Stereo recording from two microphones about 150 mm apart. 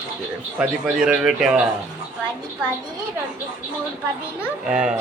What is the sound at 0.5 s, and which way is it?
A man's voice, 5° right (ahead or behind).